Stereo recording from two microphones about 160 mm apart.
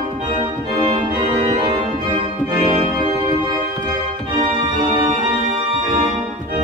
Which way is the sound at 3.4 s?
25° right (ahead or behind).